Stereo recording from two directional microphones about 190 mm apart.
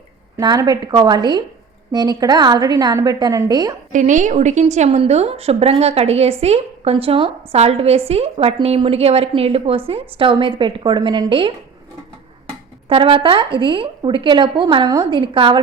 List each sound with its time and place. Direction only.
0.3 s speech: 20° right (ahead or behind)
3.9 s a woman's voice: 40° right (ahead or behind)
12.9 s speech: 30° right (ahead or behind)